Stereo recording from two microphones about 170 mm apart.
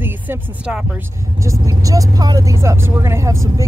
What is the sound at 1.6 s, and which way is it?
Speech, 20° right (ahead or behind).